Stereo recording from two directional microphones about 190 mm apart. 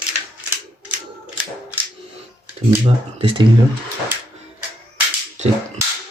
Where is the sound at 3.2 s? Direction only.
25° right (ahead or behind).